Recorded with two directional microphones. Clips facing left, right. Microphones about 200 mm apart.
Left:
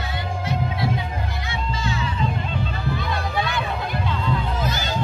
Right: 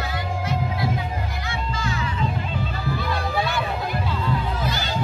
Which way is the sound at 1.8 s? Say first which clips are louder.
Left 2 dB; 25° left (ahead or behind).